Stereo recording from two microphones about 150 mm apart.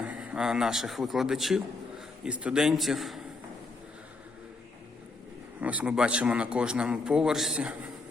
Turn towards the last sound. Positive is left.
turn(degrees=-5)  # may be behind; listen again after turning